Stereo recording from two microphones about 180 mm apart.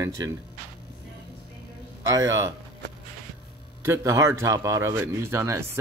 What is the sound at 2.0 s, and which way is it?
Speech, 15° right (ahead or behind).